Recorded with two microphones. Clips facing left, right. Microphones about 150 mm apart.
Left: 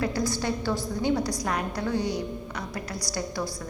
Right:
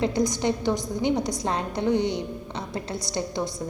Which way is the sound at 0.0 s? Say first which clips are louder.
Right 4 dB; 20° right (ahead or behind).